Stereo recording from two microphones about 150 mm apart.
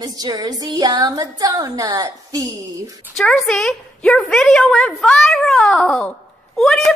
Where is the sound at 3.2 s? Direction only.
5° left (ahead or behind).